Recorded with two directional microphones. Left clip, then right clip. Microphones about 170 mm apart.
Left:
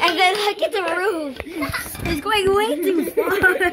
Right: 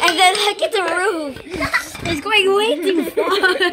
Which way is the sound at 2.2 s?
15° right (ahead or behind).